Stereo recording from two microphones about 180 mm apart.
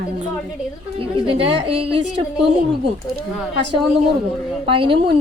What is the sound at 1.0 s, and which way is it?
A woman's voice, 30° right (ahead or behind).